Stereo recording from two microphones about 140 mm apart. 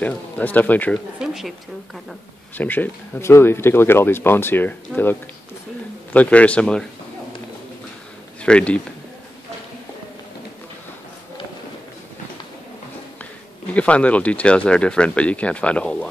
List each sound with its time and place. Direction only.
0.0 s speech: 10° left (ahead or behind)
0.9 s speech: centre (ahead or behind)
2.5 s speech: 10° left (ahead or behind)
6.1 s speech: 10° left (ahead or behind)
8.4 s speech: 10° left (ahead or behind)
13.7 s speech: 10° left (ahead or behind)